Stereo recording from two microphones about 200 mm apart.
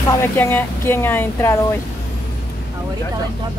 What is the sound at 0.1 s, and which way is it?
Speech, 10° left (ahead or behind).